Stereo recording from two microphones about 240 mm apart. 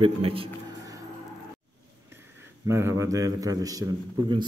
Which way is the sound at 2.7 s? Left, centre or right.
Centre.